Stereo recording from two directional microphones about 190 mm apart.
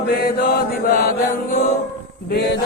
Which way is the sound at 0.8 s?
50° left (ahead or behind).